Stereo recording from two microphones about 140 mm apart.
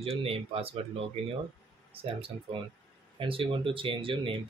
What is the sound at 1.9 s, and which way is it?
Speech, 40° right (ahead or behind).